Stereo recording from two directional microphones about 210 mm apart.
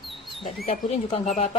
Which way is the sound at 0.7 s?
25° left (ahead or behind).